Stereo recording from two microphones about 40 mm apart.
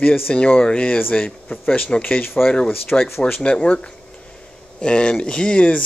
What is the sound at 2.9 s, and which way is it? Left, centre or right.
Speech, left.